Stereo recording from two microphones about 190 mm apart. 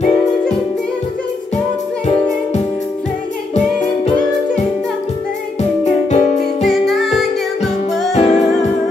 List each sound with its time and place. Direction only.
2.0 s music: 35° left (ahead or behind)
5.6 s music: 35° left (ahead or behind)
6.7 s music: centre (ahead or behind)
8.1 s music: 35° left (ahead or behind)